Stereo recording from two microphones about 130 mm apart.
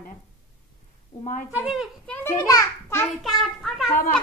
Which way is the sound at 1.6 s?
5° right (ahead or behind).